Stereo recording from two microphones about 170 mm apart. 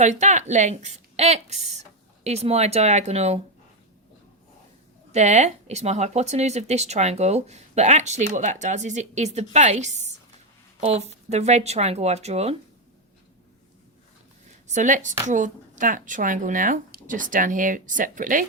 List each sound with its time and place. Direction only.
0.0 s a woman's voice: 45° right (ahead or behind)
5.1 s speech: 45° right (ahead or behind)
14.7 s speech: 45° right (ahead or behind)